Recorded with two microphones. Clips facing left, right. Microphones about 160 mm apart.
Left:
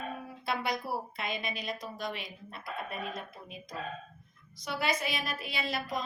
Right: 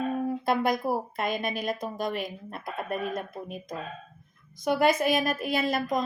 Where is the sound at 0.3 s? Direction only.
50° right (ahead or behind).